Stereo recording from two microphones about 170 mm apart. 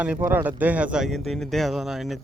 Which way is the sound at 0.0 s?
10° right (ahead or behind).